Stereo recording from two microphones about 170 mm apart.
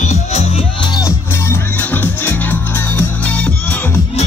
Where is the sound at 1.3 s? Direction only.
15° left (ahead or behind).